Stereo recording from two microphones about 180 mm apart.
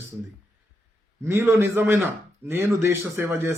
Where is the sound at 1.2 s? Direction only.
15° right (ahead or behind).